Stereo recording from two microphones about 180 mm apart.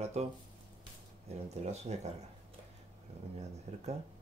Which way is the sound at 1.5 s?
40° right (ahead or behind).